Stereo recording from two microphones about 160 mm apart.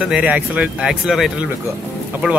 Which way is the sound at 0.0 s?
5° right (ahead or behind).